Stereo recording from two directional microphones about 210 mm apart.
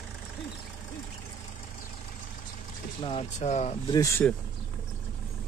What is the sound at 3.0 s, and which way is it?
Speech, 25° left (ahead or behind).